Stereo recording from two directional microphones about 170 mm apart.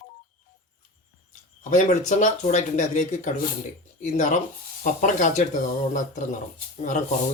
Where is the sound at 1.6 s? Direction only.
45° left (ahead or behind).